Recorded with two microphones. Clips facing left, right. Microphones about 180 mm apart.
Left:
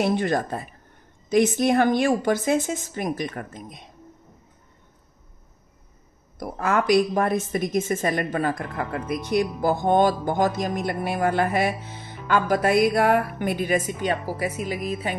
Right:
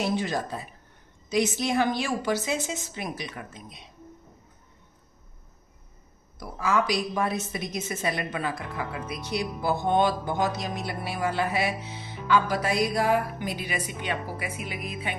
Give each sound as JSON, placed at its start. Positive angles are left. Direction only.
{"t": 0.0, "sound": "speech", "side_deg": 55}
{"t": 6.4, "sound": "speech", "side_deg": 60}